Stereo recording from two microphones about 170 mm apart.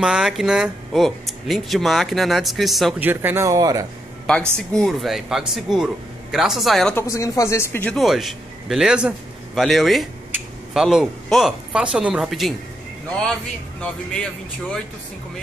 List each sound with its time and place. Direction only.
0.0 s speech: 5° right (ahead or behind)
3.0 s speech: 10° right (ahead or behind)
4.3 s speech: 5° left (ahead or behind)
7.0 s speech: 20° left (ahead or behind); by 12.5 s centre (ahead or behind)
13.7 s speech: 5° left (ahead or behind)